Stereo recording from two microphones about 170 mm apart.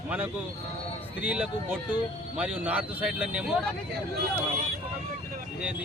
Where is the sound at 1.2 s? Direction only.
5° right (ahead or behind).